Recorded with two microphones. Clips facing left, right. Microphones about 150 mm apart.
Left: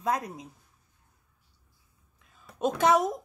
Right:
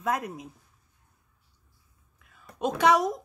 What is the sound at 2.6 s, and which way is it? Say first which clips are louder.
Speech: right 1 dB; 45° left (ahead or behind).